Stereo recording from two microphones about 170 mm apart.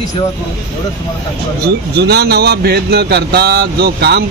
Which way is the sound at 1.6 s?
75° right (ahead or behind).